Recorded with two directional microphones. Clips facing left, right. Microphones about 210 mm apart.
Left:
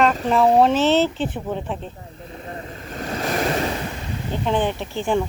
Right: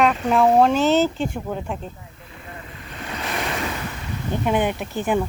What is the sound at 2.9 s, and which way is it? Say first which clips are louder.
Waves: left 5 dB; 40° left (ahead or behind).